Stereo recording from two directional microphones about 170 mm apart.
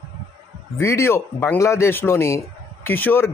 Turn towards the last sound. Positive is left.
turn(degrees=10)  # may be behind; listen again after turning